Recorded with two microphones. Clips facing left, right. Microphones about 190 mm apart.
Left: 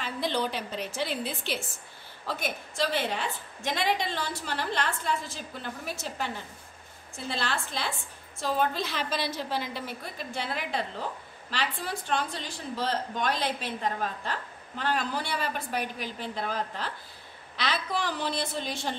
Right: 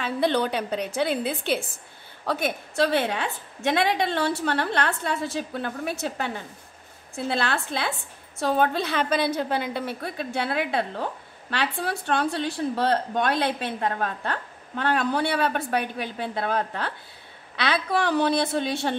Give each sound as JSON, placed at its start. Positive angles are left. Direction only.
{"t": 0.0, "sound": "a woman's voice", "side_deg": -60}
{"t": 2.2, "sound": "a woman's voice", "side_deg": -65}